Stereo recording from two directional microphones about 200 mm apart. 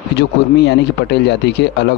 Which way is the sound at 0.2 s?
55° left (ahead or behind).